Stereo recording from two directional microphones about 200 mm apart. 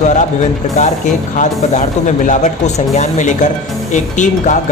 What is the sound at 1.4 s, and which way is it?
Speech, 35° left (ahead or behind).